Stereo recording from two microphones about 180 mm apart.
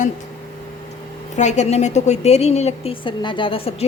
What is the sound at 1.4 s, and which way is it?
A woman's voice, 40° left (ahead or behind).